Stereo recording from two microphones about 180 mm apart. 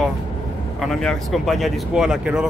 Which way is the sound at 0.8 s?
Centre (ahead or behind).